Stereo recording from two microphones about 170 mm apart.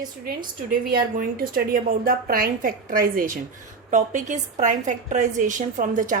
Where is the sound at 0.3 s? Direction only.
60° right (ahead or behind).